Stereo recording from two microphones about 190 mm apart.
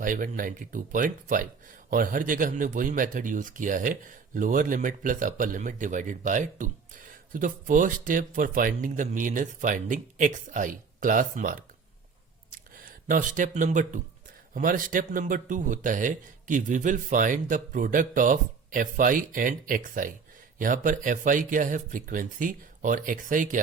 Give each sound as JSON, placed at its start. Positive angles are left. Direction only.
{"t": 0.0, "sound": "speech", "side_deg": -45}
{"t": 12.5, "sound": "a sound", "side_deg": -45}
{"t": 14.5, "sound": "speech", "side_deg": -45}